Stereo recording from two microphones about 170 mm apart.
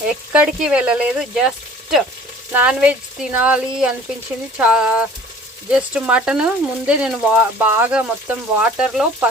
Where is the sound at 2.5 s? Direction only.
5° right (ahead or behind).